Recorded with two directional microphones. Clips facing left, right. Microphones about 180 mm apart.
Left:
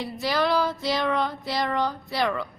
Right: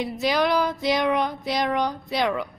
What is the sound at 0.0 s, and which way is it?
A woman's voice, 20° right (ahead or behind).